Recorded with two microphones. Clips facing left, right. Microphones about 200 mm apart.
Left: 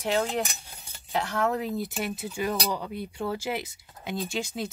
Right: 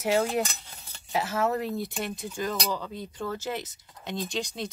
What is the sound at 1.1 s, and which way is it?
Speech, 5° right (ahead or behind).